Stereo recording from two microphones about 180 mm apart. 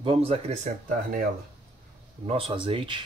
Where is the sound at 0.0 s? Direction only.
30° right (ahead or behind).